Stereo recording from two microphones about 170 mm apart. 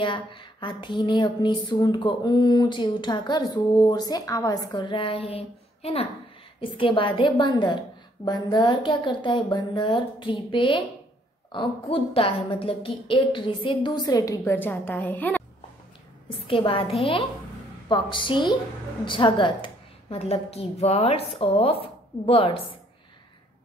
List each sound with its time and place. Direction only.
0.0 s speech: 30° left (ahead or behind); by 15.4 s 10° left (ahead or behind)
16.3 s a woman's voice: 30° left (ahead or behind)